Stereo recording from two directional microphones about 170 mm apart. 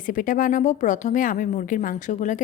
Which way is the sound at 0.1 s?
50° left (ahead or behind).